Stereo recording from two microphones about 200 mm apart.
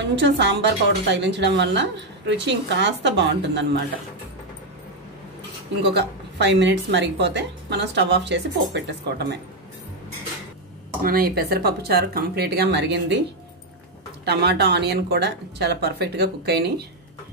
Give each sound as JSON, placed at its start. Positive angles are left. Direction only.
{"t": 0.0, "sound": "a woman's voice", "side_deg": -60}
{"t": 5.9, "sound": "a woman's voice", "side_deg": -60}
{"t": 11.0, "sound": "speech", "side_deg": -50}
{"t": 14.2, "sound": "a woman's voice", "side_deg": -55}